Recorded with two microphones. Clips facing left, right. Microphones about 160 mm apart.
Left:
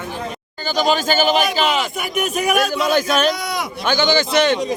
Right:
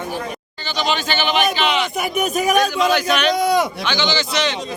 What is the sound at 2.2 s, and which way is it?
Speech, 40° right (ahead or behind).